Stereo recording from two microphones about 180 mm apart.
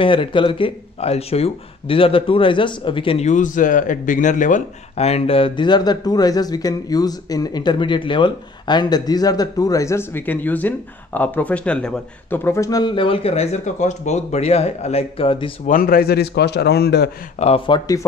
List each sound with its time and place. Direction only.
0.0 s speech: 30° left (ahead or behind)
15.6 s a man's voice: 50° left (ahead or behind)
17.4 s speech: 30° left (ahead or behind)